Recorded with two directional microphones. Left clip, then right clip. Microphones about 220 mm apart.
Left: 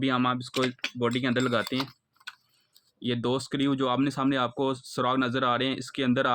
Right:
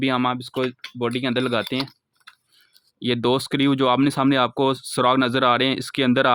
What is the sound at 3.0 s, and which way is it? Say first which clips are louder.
Speech: right 8 dB; 45° right (ahead or behind).